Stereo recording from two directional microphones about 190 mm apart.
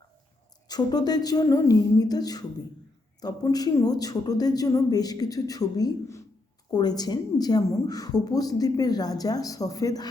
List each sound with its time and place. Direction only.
0.7 s a woman's voice: 20° left (ahead or behind)